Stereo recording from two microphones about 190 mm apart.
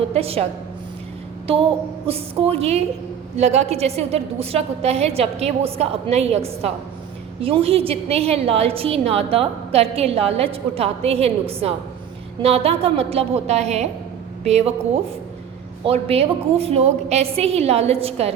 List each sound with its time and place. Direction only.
0.1 s a woman's voice: 30° right (ahead or behind)
2.0 s a woman's voice: 30° right (ahead or behind)
15.8 s a woman's voice: 30° right (ahead or behind)